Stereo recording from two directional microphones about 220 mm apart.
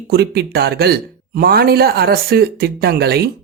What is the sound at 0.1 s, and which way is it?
Speech, 45° right (ahead or behind).